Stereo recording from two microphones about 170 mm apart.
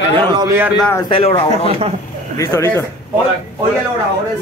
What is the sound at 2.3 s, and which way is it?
Speech, 15° left (ahead or behind).